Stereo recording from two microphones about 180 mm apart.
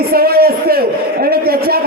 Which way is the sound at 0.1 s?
60° right (ahead or behind).